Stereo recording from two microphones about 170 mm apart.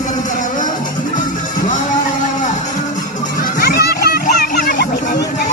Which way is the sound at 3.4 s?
60° left (ahead or behind).